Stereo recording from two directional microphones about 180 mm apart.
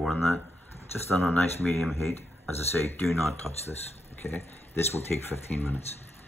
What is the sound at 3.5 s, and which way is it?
Chopping, centre (ahead or behind).